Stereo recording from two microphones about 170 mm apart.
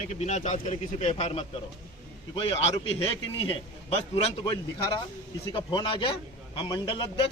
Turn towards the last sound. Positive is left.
turn(degrees=30)  # may be behind; listen again after turning